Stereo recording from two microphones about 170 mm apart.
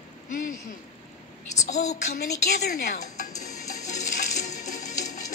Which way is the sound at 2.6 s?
75° left (ahead or behind).